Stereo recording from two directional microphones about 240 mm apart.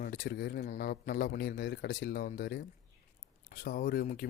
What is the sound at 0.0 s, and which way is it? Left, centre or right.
Speech, left.